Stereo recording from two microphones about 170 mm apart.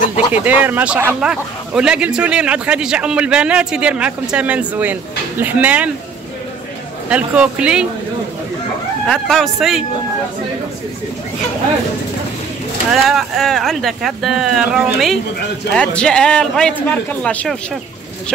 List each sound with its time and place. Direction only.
0.3 s a man's voice: 10° right (ahead or behind)
7.1 s a man's voice: 5° right (ahead or behind)
9.0 s speech: centre (ahead or behind)
12.9 s a man's voice: centre (ahead or behind)